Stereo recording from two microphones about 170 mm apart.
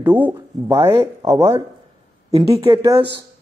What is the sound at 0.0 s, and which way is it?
Speech, 10° right (ahead or behind).